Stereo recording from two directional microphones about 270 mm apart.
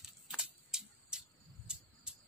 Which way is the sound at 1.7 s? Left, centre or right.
Centre.